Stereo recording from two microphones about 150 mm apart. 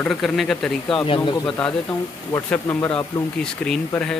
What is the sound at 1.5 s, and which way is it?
Speech, 10° left (ahead or behind).